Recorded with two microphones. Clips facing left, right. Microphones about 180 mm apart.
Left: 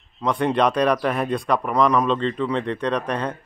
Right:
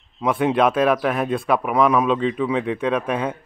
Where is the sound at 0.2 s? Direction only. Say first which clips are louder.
Right 2 dB; 5° right (ahead or behind).